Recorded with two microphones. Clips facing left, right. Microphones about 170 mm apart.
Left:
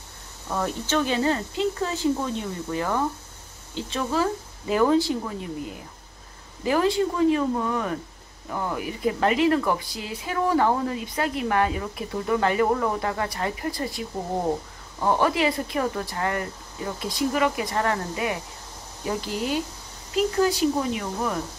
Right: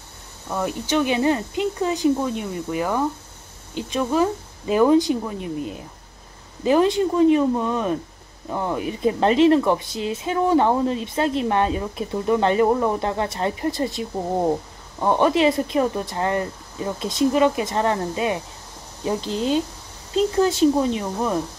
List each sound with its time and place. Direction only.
0.5 s speech: 10° right (ahead or behind)